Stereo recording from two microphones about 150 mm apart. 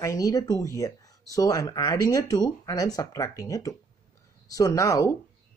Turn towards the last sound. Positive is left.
turn(degrees=20)  # may be behind; listen again after turning